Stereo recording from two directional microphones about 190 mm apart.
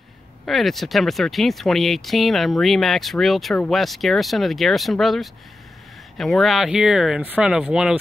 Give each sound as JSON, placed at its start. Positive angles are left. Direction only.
{"t": 0.5, "sound": "speech", "side_deg": 0}